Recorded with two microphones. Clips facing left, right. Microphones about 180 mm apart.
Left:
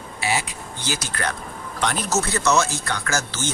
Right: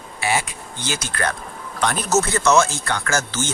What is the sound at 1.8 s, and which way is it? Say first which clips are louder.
Speech: right 3 dB; 50° right (ahead or behind).